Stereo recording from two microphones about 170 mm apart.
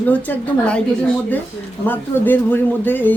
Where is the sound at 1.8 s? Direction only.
10° left (ahead or behind).